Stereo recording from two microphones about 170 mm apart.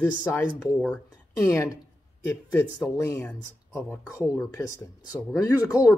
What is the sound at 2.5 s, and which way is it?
Speech, 15° left (ahead or behind).